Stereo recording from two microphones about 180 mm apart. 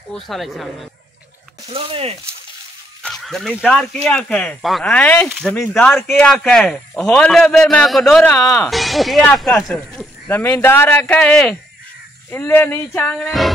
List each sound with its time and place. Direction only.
0.1 s speech: centre (ahead or behind)
1.7 s a sound: 30° right (ahead or behind)
3.0 s speech: centre (ahead or behind)
8.4 s speech: 20° left (ahead or behind)
8.6 s speech: centre (ahead or behind)